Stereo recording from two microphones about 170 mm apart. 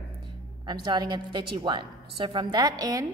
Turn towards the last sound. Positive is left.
turn(degrees=-20)  # may be behind; listen again after turning